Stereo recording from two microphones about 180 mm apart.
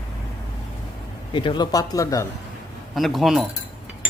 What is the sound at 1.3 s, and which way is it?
Speech, 25° left (ahead or behind).